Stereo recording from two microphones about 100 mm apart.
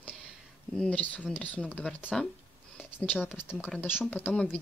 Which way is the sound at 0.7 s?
5° left (ahead or behind).